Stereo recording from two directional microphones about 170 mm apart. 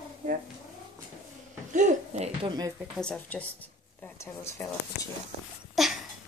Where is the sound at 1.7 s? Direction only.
50° right (ahead or behind).